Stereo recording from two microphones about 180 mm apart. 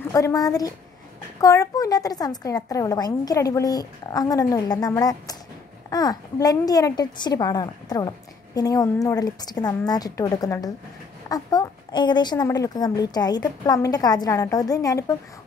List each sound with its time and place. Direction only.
0.1 s a woman's voice: 20° left (ahead or behind)